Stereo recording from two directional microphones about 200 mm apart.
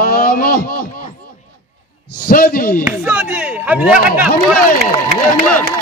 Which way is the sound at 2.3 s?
45° left (ahead or behind).